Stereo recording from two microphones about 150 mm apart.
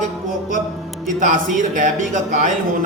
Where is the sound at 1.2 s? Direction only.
60° right (ahead or behind).